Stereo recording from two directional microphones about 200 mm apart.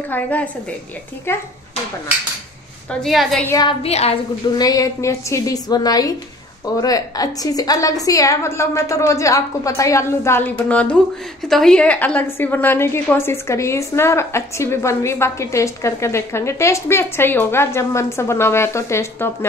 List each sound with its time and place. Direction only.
0.1 s a woman's voice: 5° left (ahead or behind)
2.9 s a woman's voice: centre (ahead or behind)
3.4 s a woman's voice: 20° left (ahead or behind)
3.8 s a woman's voice: 30° left (ahead or behind)
4.6 s a woman's voice: 20° left (ahead or behind)